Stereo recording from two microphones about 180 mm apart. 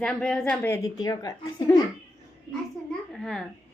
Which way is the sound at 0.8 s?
20° left (ahead or behind).